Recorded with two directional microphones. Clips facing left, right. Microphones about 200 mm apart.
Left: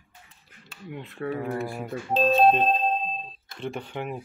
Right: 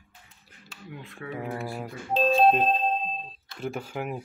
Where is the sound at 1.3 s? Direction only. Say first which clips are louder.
Left 1 dB; 5° right (ahead or behind).